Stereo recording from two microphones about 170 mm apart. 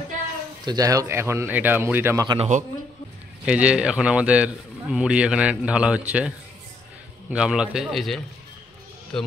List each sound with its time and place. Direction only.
0.7 s speech: 20° right (ahead or behind)
2.2 s a man's voice: 35° right (ahead or behind)
3.4 s a man's voice: 5° right (ahead or behind)